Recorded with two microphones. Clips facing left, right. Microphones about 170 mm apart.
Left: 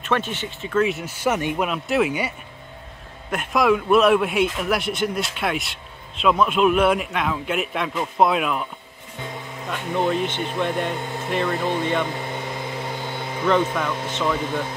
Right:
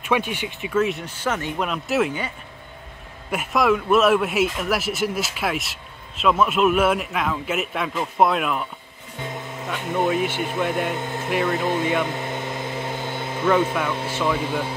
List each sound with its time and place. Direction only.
0.0 s speech: 10° right (ahead or behind)
0.7 s a man's voice: centre (ahead or behind)
3.3 s a man's voice: 5° right (ahead or behind)
9.7 s speech: centre (ahead or behind)